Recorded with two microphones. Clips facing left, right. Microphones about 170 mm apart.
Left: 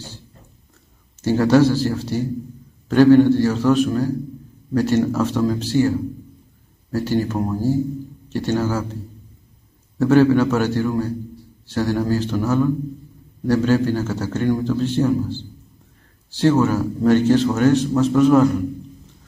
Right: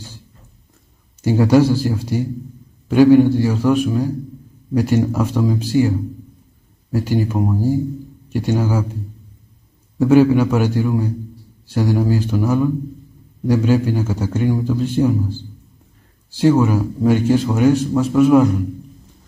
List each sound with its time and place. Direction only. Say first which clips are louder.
1.2 s a man's voice: right 1 dB; 10° right (ahead or behind)
9.9 s a man's voice: right 2 dB; 10° right (ahead or behind)